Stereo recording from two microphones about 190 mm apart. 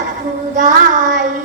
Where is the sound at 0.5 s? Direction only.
40° right (ahead or behind).